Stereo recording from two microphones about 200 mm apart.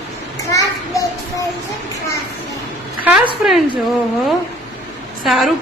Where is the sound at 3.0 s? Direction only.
10° right (ahead or behind).